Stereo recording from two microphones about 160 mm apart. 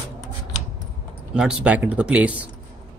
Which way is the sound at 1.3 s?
5° right (ahead or behind).